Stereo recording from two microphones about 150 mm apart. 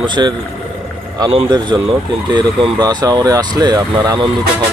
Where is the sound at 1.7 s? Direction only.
25° right (ahead or behind).